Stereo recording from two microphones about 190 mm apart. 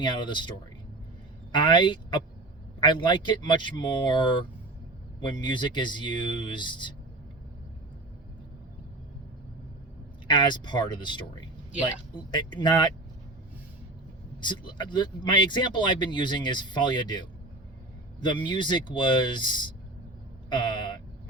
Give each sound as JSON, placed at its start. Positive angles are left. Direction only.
{"t": 0.0, "sound": "speech", "side_deg": 25}
{"t": 1.5, "sound": "speech", "side_deg": 25}
{"t": 10.2, "sound": "speech", "side_deg": 25}
{"t": 14.4, "sound": "speech", "side_deg": 25}